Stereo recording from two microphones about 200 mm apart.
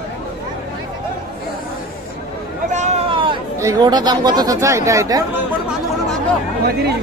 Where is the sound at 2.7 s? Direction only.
30° right (ahead or behind).